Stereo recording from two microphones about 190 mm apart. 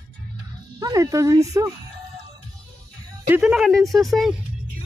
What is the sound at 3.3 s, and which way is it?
Speech, 5° right (ahead or behind).